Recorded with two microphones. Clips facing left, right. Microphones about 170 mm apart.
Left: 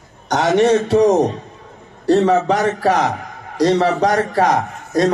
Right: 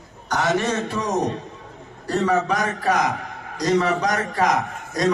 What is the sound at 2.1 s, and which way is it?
A man's voice, 30° left (ahead or behind).